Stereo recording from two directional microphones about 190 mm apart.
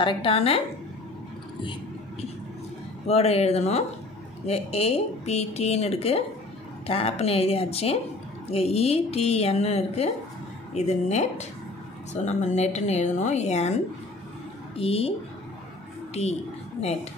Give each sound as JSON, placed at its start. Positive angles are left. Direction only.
{"t": 0.0, "sound": "a woman's voice", "side_deg": 25}
{"t": 3.1, "sound": "speech", "side_deg": 35}
{"t": 14.8, "sound": "speech", "side_deg": 30}